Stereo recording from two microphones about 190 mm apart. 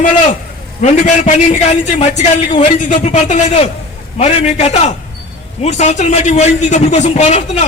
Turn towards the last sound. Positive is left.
turn(degrees=35)  # may be behind; listen again after turning